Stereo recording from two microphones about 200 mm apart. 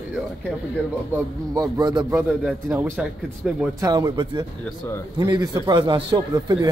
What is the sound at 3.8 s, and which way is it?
A man's voice, 20° right (ahead or behind).